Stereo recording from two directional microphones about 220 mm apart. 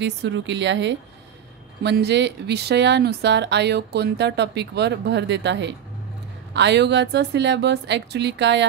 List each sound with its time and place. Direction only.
0.0 s speech: 50° right (ahead or behind)